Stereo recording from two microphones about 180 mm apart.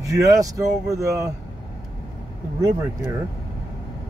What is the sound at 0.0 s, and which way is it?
Speech, 20° right (ahead or behind).